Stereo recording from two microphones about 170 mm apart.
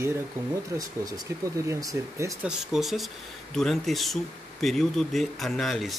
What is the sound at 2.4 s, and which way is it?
Speech, centre (ahead or behind).